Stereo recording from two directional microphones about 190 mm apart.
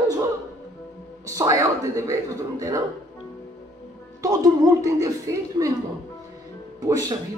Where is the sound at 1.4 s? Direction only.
15° right (ahead or behind).